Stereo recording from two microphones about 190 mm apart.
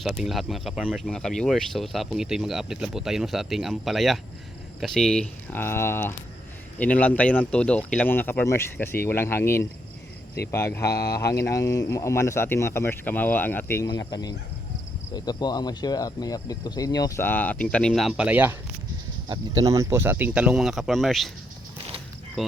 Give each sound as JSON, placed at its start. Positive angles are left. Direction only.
{"t": 0.0, "sound": "speech", "side_deg": 0}
{"t": 19.3, "sound": "speech", "side_deg": -20}
{"t": 22.4, "sound": "speech", "side_deg": 0}